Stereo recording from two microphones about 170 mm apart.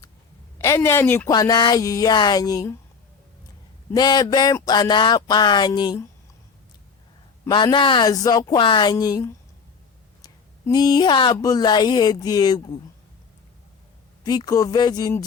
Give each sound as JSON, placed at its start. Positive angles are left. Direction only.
{"t": 0.6, "sound": "a woman's voice", "side_deg": 15}
{"t": 3.9, "sound": "speech", "side_deg": 25}
{"t": 7.5, "sound": "speech", "side_deg": 30}
{"t": 14.3, "sound": "speech", "side_deg": 25}